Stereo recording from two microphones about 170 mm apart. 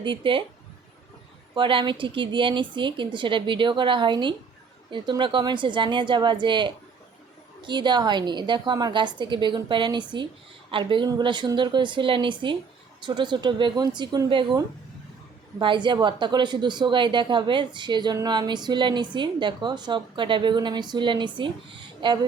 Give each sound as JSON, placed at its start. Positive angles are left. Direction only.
{"t": 0.0, "sound": "a woman's voice", "side_deg": -30}
{"t": 1.5, "sound": "a woman's voice", "side_deg": -30}